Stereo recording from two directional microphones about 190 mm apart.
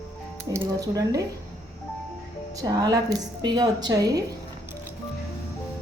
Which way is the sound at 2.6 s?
20° right (ahead or behind).